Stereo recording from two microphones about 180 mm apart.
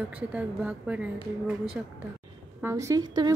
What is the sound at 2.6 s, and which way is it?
Speech, 15° right (ahead or behind).